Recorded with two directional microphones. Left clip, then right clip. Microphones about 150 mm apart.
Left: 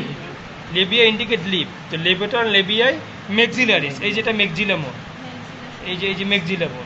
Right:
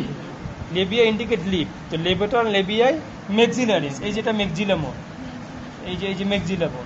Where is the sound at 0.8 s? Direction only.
55° right (ahead or behind).